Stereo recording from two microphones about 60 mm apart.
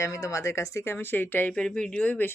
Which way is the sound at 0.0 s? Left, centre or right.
Left.